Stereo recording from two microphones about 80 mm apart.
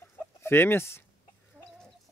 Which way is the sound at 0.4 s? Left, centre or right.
Left.